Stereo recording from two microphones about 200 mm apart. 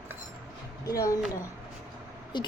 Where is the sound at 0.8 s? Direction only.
15° left (ahead or behind).